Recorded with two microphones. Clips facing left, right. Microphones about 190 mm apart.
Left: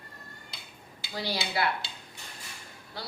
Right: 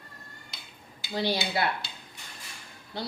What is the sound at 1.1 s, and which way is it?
Speech, 25° right (ahead or behind).